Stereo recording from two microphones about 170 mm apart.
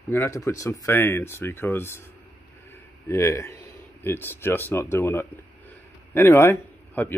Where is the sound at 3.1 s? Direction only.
15° left (ahead or behind).